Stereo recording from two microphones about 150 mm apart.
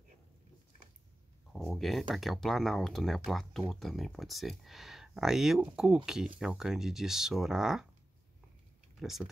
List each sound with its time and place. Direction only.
1.5 s speech: centre (ahead or behind)
9.0 s speech: centre (ahead or behind)